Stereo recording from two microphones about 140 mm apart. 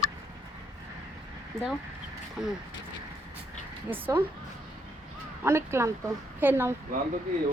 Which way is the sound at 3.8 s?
15° right (ahead or behind).